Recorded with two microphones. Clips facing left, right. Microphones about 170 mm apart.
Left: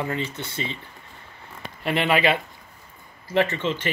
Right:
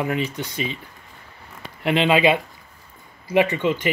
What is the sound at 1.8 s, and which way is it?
Speech, 15° right (ahead or behind).